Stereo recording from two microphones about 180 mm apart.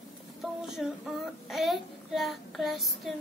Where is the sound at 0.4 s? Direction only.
5° right (ahead or behind).